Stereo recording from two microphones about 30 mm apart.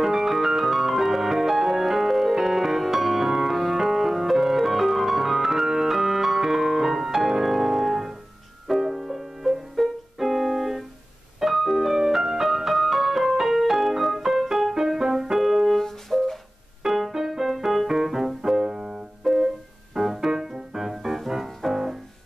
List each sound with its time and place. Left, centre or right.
0.0 s music: centre
3.7 s piano: centre
8.6 s music: centre
10.2 s keyboard: centre
11.3 s music: centre
15.3 s piano: centre
15.8 s music: centre
16.8 s music: centre
18.7 s music: centre
19.2 s music: centre